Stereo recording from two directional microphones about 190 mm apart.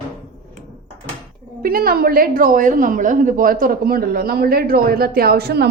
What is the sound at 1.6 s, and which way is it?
A woman's voice, 50° right (ahead or behind).